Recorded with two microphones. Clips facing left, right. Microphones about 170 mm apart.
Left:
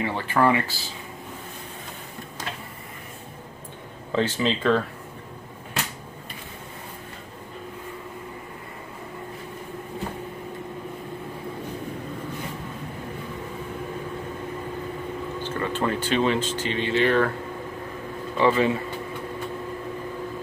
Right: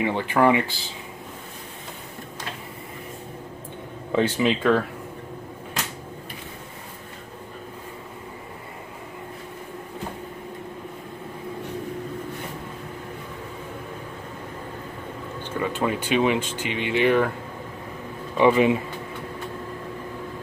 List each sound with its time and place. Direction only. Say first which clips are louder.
0.0 s speech: right 2 dB; 15° right (ahead or behind)
4.1 s speech: right 2 dB; 15° right (ahead or behind)
15.6 s speech: right 1 dB; 10° right (ahead or behind)
18.4 s speech: right 3 dB; 15° right (ahead or behind)